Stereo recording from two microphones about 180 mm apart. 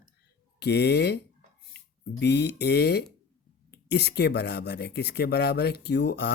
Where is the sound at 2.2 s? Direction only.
65° left (ahead or behind).